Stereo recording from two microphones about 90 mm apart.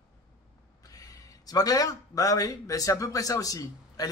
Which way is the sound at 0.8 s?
40° left (ahead or behind).